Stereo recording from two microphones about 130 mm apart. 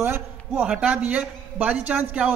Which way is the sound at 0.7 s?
10° right (ahead or behind).